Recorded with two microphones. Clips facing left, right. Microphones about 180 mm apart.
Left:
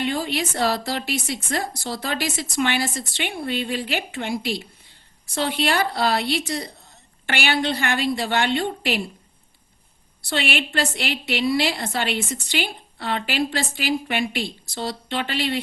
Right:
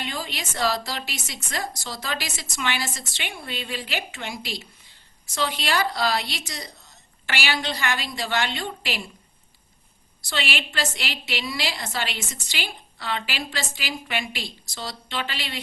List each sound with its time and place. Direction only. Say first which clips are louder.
0.0 s a woman's voice: left 8 dB; 55° left (ahead or behind)
10.2 s a woman's voice: left 5 dB; 55° left (ahead or behind)